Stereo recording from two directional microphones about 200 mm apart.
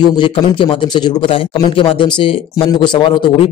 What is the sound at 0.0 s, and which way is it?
A man's voice, 25° left (ahead or behind).